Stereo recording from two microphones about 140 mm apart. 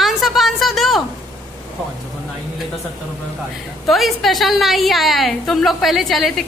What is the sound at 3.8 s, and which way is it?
A woman's voice, centre (ahead or behind).